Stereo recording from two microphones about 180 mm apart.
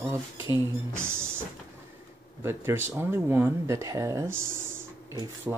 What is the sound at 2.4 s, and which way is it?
Speech, 15° right (ahead or behind).